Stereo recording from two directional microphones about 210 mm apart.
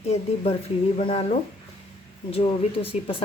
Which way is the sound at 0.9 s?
30° left (ahead or behind).